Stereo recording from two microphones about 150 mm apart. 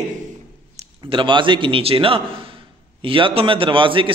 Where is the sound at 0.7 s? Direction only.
35° right (ahead or behind).